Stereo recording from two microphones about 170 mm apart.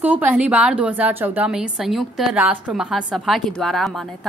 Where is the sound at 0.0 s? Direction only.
10° right (ahead or behind).